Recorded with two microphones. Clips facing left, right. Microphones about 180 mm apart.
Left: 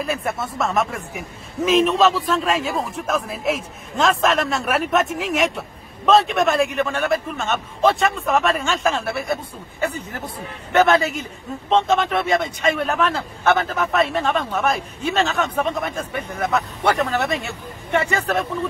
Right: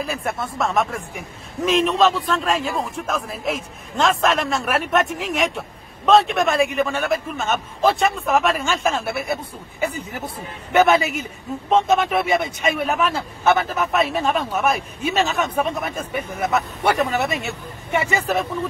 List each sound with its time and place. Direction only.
0.0 s a man's voice: centre (ahead or behind)